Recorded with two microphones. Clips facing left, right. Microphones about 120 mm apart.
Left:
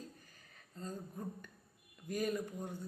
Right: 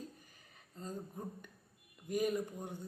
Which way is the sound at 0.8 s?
20° right (ahead or behind).